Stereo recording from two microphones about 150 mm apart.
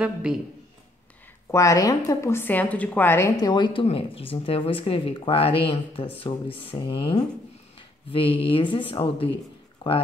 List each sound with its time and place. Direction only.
0.0 s speech: 5° right (ahead or behind)
1.5 s a woman's voice: 20° left (ahead or behind)